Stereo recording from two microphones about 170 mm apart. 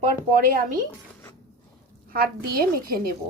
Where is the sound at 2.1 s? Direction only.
60° right (ahead or behind).